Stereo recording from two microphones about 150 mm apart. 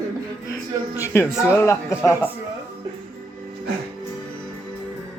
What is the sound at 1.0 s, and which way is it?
Speech, 15° left (ahead or behind).